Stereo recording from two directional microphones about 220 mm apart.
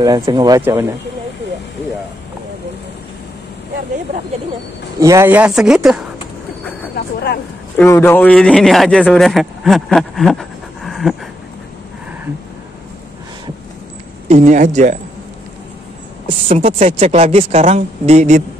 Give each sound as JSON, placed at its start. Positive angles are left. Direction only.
{"t": 0.0, "sound": "speech", "side_deg": -20}
{"t": 5.0, "sound": "speech", "side_deg": -10}
{"t": 7.7, "sound": "a man's voice", "side_deg": 10}
{"t": 14.2, "sound": "speech", "side_deg": -30}
{"t": 16.4, "sound": "speech", "side_deg": -30}